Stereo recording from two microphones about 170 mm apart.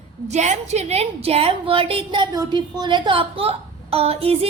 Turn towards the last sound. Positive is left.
turn(degrees=-35)  # may be behind; listen again after turning